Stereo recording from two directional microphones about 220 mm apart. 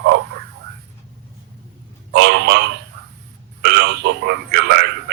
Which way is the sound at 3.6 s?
50° right (ahead or behind).